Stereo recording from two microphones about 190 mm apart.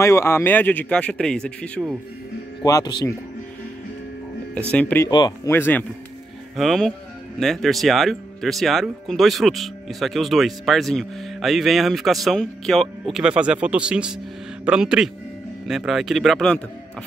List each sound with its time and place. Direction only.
0.0 s a man's voice: 15° left (ahead or behind)
2.6 s speech: 20° left (ahead or behind)
4.6 s a man's voice: 5° left (ahead or behind)